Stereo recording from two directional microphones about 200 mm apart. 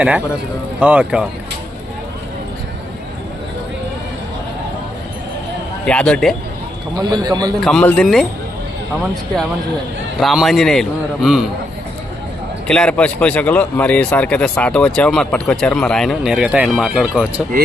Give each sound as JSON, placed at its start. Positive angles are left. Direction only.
{"t": 0.8, "sound": "speech", "side_deg": -5}
{"t": 5.8, "sound": "speech", "side_deg": 5}
{"t": 6.9, "sound": "a man's voice", "side_deg": -20}
{"t": 7.6, "sound": "speech", "side_deg": 5}
{"t": 10.2, "sound": "speech", "side_deg": 0}
{"t": 12.6, "sound": "speech", "side_deg": 5}